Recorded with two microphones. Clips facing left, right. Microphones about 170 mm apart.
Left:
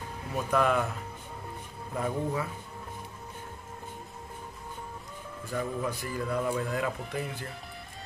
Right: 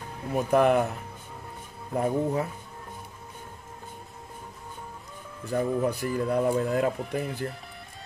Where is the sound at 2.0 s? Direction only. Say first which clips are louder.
Right 5 dB; 40° right (ahead or behind).